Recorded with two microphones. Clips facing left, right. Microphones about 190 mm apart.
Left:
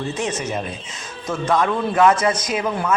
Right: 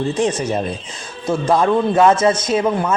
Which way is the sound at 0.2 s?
35° right (ahead or behind).